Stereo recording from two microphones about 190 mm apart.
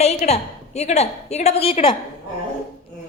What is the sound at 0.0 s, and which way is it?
A woman's voice, 35° left (ahead or behind).